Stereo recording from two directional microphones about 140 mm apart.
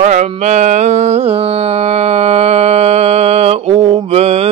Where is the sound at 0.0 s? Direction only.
60° right (ahead or behind).